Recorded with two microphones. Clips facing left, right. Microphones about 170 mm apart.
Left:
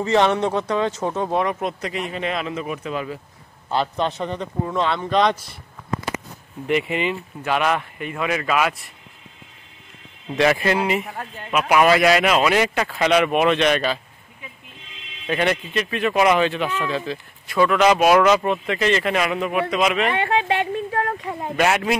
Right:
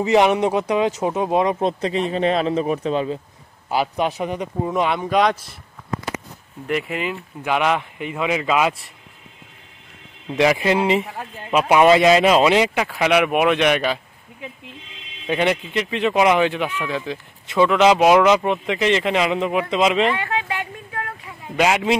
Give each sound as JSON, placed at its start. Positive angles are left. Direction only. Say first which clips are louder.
{"t": 0.0, "sound": "speech", "louder": "right 2 dB", "side_deg": -15}
{"t": 3.6, "sound": "speech", "louder": "right 1 dB", "side_deg": -10}
{"t": 6.7, "sound": "speech", "louder": "left 2 dB", "side_deg": 0}
{"t": 7.4, "sound": "speech", "louder": "right 1 dB", "side_deg": -15}
{"t": 10.3, "sound": "speech", "louder": "right 1 dB", "side_deg": -15}
{"t": 15.2, "sound": "speech", "louder": "right 1 dB", "side_deg": -15}
{"t": 20.2, "sound": "a sound", "louder": "left 5 dB", "side_deg": 25}
{"t": 21.5, "sound": "speech", "louder": "right 2 dB", "side_deg": -15}